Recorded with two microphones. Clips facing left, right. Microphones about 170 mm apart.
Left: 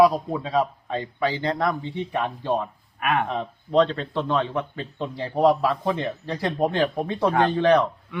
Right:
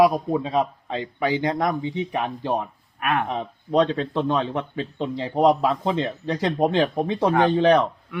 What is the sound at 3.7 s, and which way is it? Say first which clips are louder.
Speech: even; 15° right (ahead or behind).